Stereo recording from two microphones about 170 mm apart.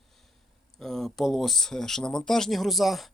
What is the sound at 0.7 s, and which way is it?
Speech, centre (ahead or behind).